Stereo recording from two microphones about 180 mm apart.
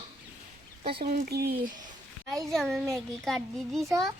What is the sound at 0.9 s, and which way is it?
Speech, 55° right (ahead or behind).